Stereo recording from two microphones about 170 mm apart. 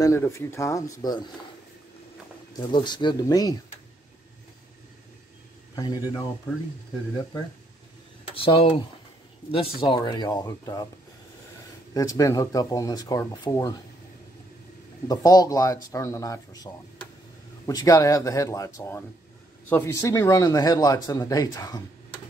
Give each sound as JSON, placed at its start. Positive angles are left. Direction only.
{"t": 0.0, "sound": "speech", "side_deg": 15}
{"t": 2.5, "sound": "speech", "side_deg": 25}
{"t": 5.8, "sound": "speech", "side_deg": 25}
{"t": 8.4, "sound": "speech", "side_deg": 30}
{"t": 11.9, "sound": "speech", "side_deg": 20}
{"t": 15.0, "sound": "speech", "side_deg": 20}